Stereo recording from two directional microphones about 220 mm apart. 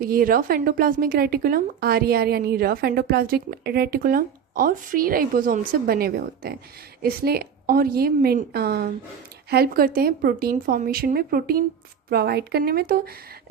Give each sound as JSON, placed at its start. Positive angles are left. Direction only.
{"t": 0.0, "sound": "a woman's voice", "side_deg": -40}